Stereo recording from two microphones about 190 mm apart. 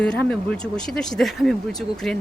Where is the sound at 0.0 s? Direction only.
5° left (ahead or behind).